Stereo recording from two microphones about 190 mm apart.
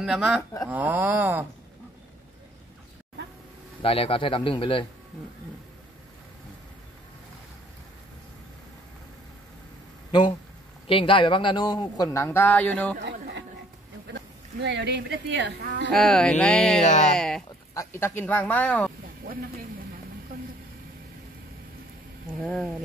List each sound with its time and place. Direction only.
0.0 s speech: 5° right (ahead or behind)
3.8 s a man's voice: 30° left (ahead or behind)
10.9 s a man's voice: 30° left (ahead or behind); by 12.9 s 5° left (ahead or behind)
14.1 s speech: 65° right (ahead or behind)
15.9 s speech: 5° left (ahead or behind)
16.8 s speech: 40° left (ahead or behind)
17.1 s speech: 5° left (ahead or behind)
17.7 s speech: 15° left (ahead or behind)
22.4 s speech: 5° left (ahead or behind)